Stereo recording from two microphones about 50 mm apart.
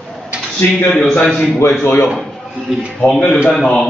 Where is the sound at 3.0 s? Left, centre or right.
Centre.